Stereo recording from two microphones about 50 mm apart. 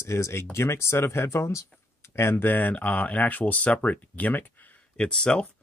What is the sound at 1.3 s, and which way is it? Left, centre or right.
Speech, left.